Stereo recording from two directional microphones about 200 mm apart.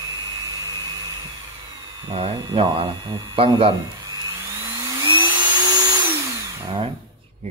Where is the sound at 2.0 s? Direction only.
25° right (ahead or behind).